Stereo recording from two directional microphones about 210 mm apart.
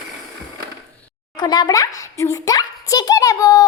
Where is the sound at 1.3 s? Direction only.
20° left (ahead or behind).